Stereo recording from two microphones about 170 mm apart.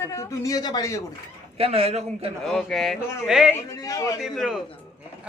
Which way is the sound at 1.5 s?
35° right (ahead or behind).